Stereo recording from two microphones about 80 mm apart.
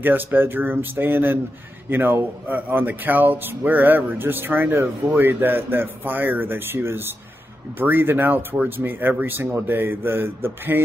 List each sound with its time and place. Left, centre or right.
0.0 s speech: right